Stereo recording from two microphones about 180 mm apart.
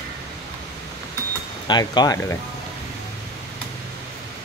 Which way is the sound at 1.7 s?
25° left (ahead or behind).